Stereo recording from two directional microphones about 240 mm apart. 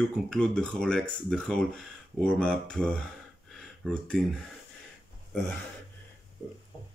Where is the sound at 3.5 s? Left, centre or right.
Centre.